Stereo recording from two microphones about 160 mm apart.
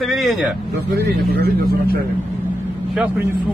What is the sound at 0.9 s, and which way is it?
Speech, 75° right (ahead or behind).